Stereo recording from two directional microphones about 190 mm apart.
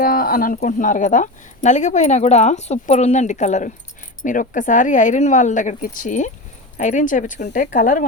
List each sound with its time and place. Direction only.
0.0 s speech: 50° left (ahead or behind)